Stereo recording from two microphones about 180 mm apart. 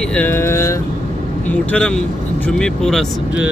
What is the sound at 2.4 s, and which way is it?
Speech, 5° left (ahead or behind).